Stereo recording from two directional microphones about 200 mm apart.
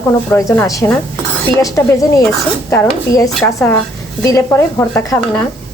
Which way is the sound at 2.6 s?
10° left (ahead or behind).